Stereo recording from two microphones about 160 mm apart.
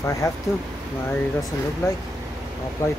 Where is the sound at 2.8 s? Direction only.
20° left (ahead or behind).